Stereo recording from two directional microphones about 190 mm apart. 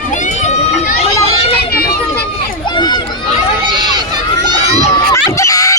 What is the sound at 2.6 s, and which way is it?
Run, 25° left (ahead or behind).